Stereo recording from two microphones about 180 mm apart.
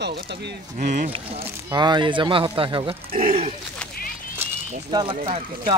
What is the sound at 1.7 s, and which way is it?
Speech, 25° right (ahead or behind).